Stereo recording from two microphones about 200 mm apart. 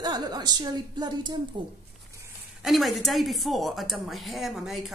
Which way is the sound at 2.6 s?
Centre (ahead or behind).